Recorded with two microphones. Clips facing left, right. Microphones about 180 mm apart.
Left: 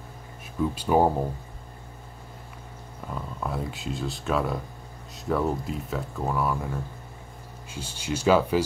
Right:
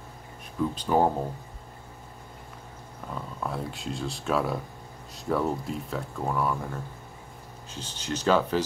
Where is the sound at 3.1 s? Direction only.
Centre (ahead or behind).